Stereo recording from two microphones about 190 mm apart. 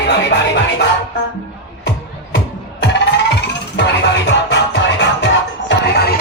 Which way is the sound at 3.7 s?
70° left (ahead or behind).